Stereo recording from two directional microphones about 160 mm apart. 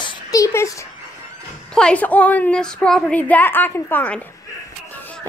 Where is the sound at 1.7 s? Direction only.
5° left (ahead or behind).